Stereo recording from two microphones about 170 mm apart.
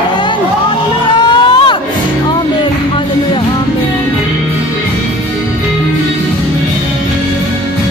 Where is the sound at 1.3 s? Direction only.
25° left (ahead or behind).